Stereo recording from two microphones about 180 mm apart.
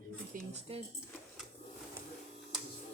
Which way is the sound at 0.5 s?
35° right (ahead or behind).